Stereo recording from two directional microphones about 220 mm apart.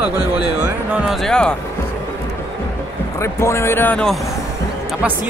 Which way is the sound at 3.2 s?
10° left (ahead or behind).